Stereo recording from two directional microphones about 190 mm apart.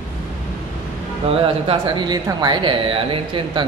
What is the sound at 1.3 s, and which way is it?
Speech, 30° right (ahead or behind).